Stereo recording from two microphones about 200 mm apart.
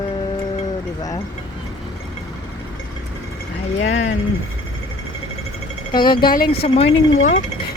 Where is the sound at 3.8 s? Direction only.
35° left (ahead or behind).